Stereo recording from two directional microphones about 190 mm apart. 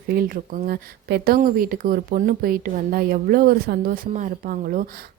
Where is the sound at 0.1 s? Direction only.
50° right (ahead or behind).